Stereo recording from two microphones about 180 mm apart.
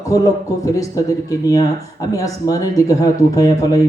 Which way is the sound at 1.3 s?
20° left (ahead or behind).